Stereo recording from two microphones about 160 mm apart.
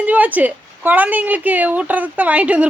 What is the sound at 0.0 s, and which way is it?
A woman's voice, 10° right (ahead or behind).